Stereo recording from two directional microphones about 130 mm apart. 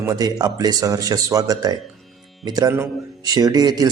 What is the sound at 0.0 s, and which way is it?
A man's voice, 30° right (ahead or behind).